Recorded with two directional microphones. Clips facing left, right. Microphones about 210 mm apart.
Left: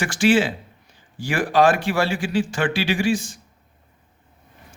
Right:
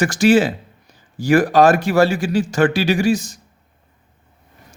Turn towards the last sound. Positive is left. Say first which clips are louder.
# right 4 dB
turn(degrees=-40)  # may be behind; listen again after turning